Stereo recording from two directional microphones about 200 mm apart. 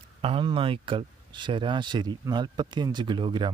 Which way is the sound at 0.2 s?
25° right (ahead or behind).